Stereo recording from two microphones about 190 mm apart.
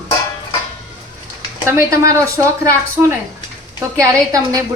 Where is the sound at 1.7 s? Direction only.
15° right (ahead or behind).